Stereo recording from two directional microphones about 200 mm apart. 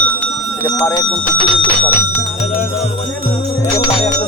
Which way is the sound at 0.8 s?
15° left (ahead or behind).